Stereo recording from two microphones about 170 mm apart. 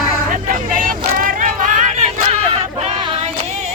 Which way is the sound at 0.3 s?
50° right (ahead or behind).